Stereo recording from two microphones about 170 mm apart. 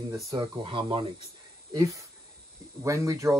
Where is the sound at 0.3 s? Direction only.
25° right (ahead or behind).